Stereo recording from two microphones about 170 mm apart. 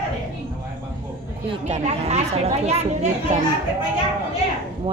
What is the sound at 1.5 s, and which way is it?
A woman's voice, 40° right (ahead or behind).